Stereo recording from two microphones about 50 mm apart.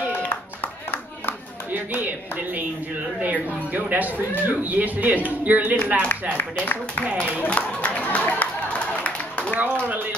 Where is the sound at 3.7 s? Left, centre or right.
Right.